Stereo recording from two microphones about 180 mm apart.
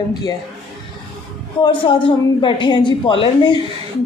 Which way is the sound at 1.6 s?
30° left (ahead or behind).